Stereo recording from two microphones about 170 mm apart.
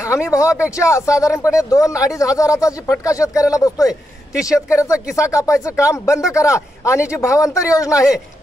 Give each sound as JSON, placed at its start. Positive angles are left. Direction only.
{"t": 0.0, "sound": "a man's voice", "side_deg": 15}